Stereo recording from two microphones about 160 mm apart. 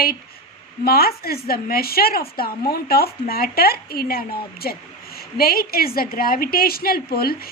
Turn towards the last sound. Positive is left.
turn(degrees=70)  # may be behind; listen again after turning